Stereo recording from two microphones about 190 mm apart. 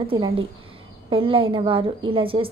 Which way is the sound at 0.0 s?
30° right (ahead or behind).